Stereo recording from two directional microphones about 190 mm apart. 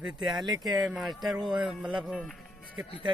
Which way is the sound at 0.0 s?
Centre (ahead or behind).